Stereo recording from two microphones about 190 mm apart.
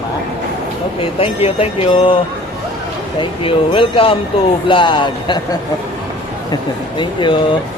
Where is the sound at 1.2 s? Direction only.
30° left (ahead or behind).